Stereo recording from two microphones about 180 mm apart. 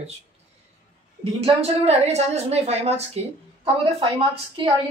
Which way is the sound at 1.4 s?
35° right (ahead or behind).